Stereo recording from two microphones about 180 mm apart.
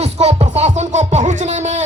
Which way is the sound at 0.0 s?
35° right (ahead or behind).